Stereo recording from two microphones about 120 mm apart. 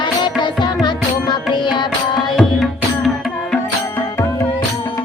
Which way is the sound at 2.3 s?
Centre (ahead or behind).